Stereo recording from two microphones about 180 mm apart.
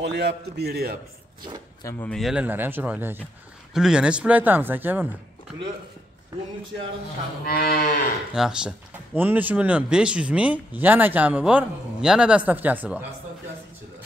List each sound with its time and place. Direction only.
0.0 s a man's voice: 70° right (ahead or behind)
1.8 s speech: 15° left (ahead or behind)
2.0 s speech: centre (ahead or behind)
7.4 s cattle: 60° left (ahead or behind)
8.4 s speech: 5° right (ahead or behind)